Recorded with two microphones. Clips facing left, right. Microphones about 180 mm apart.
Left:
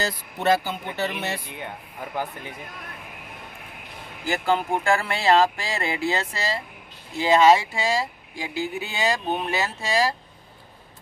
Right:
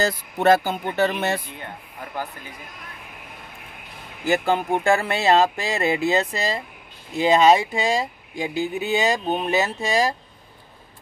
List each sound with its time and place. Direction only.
0.0 s speech: 50° right (ahead or behind)
4.2 s speech: 20° right (ahead or behind)